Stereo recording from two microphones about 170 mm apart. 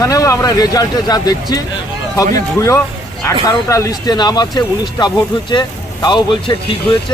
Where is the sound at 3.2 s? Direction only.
20° left (ahead or behind).